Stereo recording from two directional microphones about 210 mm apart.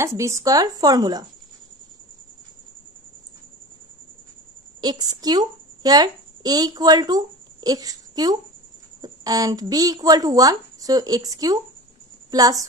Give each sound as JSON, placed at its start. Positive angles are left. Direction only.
{"t": 0.0, "sound": "speech", "side_deg": -15}
{"t": 4.8, "sound": "a woman's voice", "side_deg": -20}